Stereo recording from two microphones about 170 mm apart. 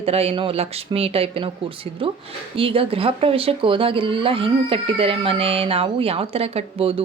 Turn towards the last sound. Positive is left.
turn(degrees=-35)  # may be behind; listen again after turning